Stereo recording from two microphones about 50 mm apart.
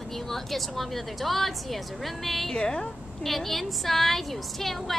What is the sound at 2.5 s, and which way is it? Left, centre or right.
Speech, centre.